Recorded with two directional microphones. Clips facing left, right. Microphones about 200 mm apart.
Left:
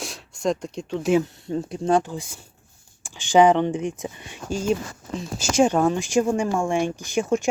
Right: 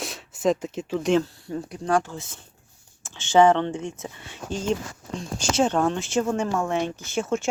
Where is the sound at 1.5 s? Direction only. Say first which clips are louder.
Left 3 dB; 25° left (ahead or behind).